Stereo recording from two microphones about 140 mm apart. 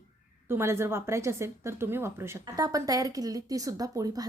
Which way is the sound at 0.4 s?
15° right (ahead or behind).